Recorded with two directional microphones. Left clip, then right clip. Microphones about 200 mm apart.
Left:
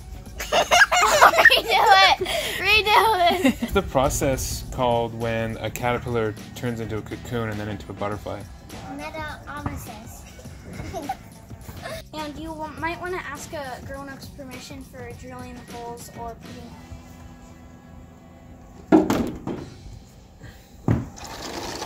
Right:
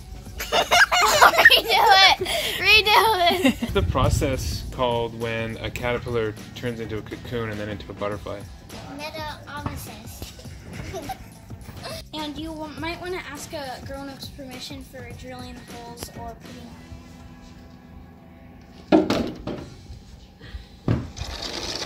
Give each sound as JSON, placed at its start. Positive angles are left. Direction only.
{"t": 0.4, "sound": "chicken", "side_deg": 25}
{"t": 1.2, "sound": "a sound", "side_deg": 0}
{"t": 3.7, "sound": "speech", "side_deg": 60}
{"t": 8.4, "sound": "music", "side_deg": 0}
{"t": 10.7, "sound": "horse", "side_deg": 5}
{"t": 11.8, "sound": "speech", "side_deg": 0}
{"t": 18.9, "sound": "a sound", "side_deg": 45}
{"t": 20.8, "sound": "fill", "side_deg": 40}